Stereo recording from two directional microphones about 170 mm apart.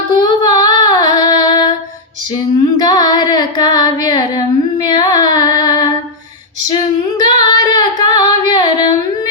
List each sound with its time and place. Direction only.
0.2 s singing: 20° left (ahead or behind)
2.7 s carnatic music: 25° left (ahead or behind)
7.2 s singing: 20° left (ahead or behind)